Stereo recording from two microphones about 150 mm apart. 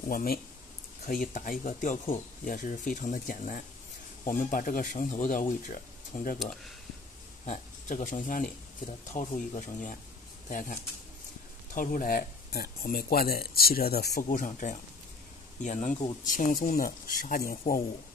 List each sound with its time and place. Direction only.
0.1 s speech: 75° left (ahead or behind)
6.4 s speech: centre (ahead or behind)
7.4 s speech: 55° left (ahead or behind); by 17.8 s 75° left (ahead or behind)